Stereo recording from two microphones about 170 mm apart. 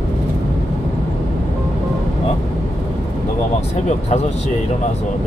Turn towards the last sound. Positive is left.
turn(degrees=40)  # may be behind; listen again after turning